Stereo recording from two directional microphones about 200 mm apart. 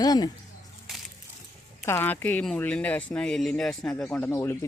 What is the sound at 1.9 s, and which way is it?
Speech, 10° left (ahead or behind).